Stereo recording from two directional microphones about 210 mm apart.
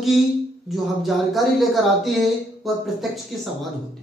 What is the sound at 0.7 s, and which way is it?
Speech, centre (ahead or behind).